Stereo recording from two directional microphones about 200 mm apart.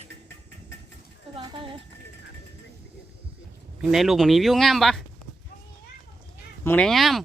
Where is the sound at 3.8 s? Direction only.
Centre (ahead or behind).